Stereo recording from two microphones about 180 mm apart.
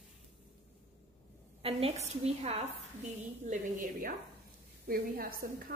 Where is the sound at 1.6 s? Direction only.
35° right (ahead or behind).